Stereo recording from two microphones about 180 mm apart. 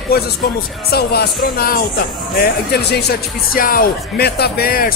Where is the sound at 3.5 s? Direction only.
55° left (ahead or behind).